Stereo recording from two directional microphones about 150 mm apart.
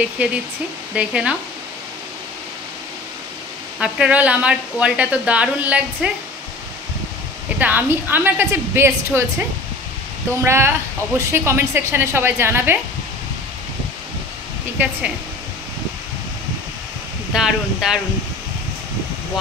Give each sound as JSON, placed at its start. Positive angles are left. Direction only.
{"t": 0.2, "sound": "speech", "side_deg": -10}
{"t": 3.8, "sound": "speech", "side_deg": -10}
{"t": 7.5, "sound": "speech", "side_deg": -10}
{"t": 10.4, "sound": "speech", "side_deg": -15}
{"t": 14.8, "sound": "speech", "side_deg": -10}
{"t": 17.3, "sound": "speech", "side_deg": -5}